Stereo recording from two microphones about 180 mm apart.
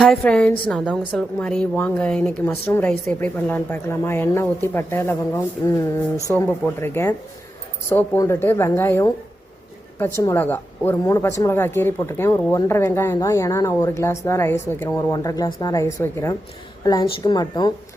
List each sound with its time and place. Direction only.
0.0 s a woman's voice: 5° left (ahead or behind)
10.2 s a woman's voice: 10° left (ahead or behind)